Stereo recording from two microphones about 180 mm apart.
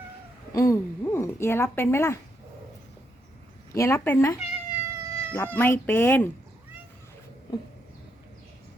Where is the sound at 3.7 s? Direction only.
15° left (ahead or behind).